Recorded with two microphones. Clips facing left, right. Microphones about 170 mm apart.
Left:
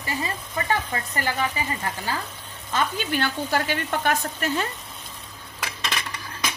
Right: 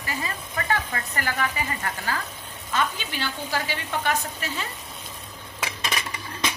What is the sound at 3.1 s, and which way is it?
A woman's voice, 50° left (ahead or behind).